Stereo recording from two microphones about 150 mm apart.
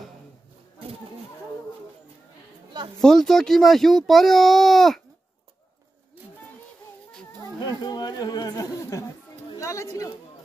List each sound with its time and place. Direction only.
3.0 s speech: 5° left (ahead or behind)
7.6 s speech: 25° left (ahead or behind)